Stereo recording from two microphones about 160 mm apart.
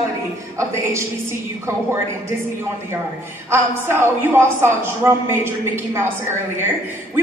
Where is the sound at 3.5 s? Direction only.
15° right (ahead or behind).